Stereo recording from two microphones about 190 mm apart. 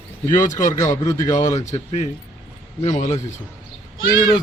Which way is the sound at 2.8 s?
40° left (ahead or behind).